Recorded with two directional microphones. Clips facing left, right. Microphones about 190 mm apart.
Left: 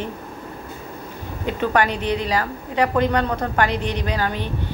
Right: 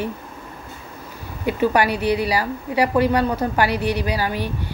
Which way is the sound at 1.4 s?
10° right (ahead or behind).